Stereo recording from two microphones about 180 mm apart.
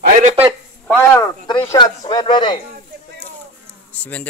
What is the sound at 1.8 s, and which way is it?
Speech, 25° left (ahead or behind).